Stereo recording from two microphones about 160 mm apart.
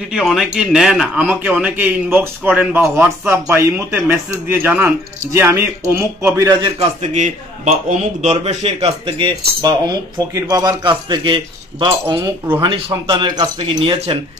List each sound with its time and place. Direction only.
0.1 s a man's voice: centre (ahead or behind); by 6.7 s 20° right (ahead or behind)
6.8 s speech: 45° right (ahead or behind); by 14.1 s 30° right (ahead or behind)